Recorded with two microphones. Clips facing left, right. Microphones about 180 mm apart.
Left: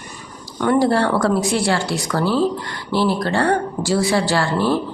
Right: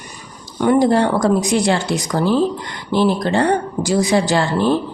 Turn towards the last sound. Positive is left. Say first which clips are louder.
# right 2 dB
turn(degrees=-20)  # may be behind; listen again after turning